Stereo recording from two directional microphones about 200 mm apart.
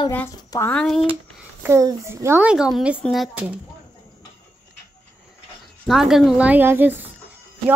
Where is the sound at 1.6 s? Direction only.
15° right (ahead or behind).